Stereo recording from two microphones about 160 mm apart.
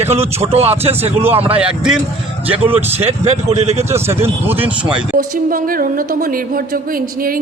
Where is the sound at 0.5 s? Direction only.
40° right (ahead or behind).